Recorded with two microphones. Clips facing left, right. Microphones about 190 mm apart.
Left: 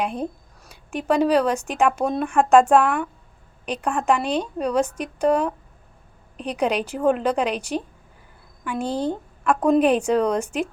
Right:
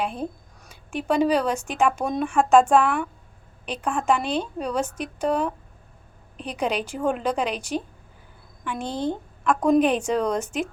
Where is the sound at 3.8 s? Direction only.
10° left (ahead or behind).